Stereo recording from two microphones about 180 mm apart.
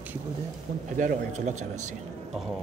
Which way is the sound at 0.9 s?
45° right (ahead or behind).